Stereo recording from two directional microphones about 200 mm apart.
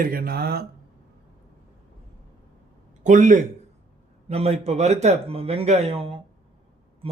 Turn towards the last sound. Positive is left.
turn(degrees=-30)  # may be behind; listen again after turning